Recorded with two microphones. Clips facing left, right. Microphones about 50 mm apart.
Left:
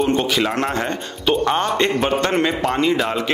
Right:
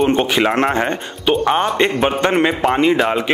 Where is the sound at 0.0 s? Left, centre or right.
Right.